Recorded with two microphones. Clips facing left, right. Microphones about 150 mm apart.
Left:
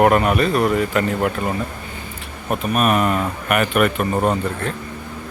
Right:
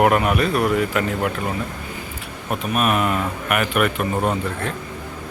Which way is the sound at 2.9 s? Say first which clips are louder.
Left 3 dB; 40° left (ahead or behind).